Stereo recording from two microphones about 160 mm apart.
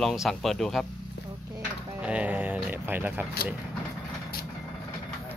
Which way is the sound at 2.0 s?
10° right (ahead or behind).